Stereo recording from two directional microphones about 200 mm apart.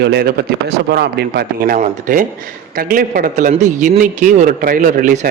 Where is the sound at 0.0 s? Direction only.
55° right (ahead or behind).